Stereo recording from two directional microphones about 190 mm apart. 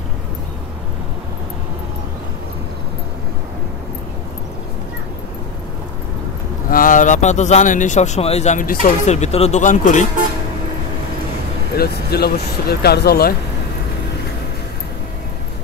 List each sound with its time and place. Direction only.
6.7 s speech: 45° left (ahead or behind)
11.7 s speech: 55° left (ahead or behind)